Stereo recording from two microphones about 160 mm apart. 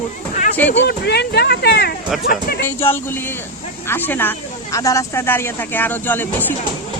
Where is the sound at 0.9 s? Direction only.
90° left.